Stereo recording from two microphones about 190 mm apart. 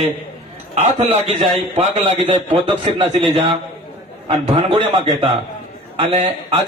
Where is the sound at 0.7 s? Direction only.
35° right (ahead or behind).